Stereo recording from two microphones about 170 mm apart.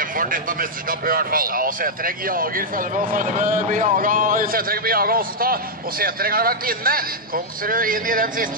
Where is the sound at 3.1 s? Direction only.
50° right (ahead or behind).